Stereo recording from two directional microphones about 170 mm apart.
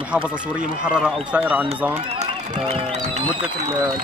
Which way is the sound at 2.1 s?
35° right (ahead or behind).